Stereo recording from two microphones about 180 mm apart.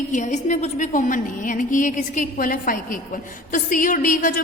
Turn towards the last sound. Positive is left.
turn(degrees=50)  # may be behind; listen again after turning